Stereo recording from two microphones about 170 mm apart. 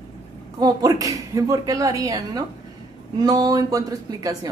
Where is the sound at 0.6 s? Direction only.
20° right (ahead or behind).